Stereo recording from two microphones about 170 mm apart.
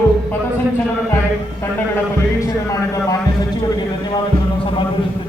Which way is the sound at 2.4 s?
20° left (ahead or behind).